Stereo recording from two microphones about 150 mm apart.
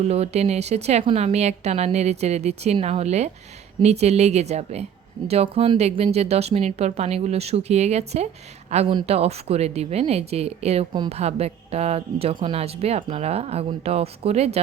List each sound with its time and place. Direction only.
0.0 s speech: 45° right (ahead or behind)